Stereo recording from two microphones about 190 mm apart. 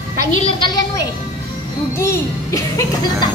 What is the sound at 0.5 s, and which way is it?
Speech, 25° left (ahead or behind).